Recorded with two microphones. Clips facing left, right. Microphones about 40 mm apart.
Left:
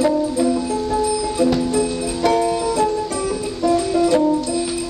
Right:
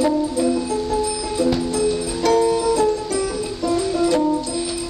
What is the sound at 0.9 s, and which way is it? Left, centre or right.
Music, centre.